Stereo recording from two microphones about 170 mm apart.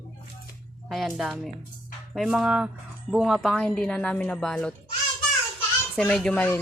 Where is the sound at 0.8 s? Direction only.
Centre (ahead or behind).